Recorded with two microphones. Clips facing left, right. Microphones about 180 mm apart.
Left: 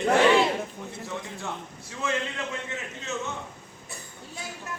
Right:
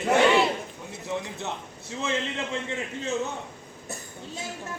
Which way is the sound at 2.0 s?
25° right (ahead or behind).